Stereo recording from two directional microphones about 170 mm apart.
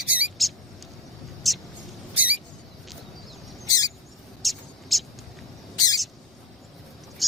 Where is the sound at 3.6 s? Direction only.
20° left (ahead or behind).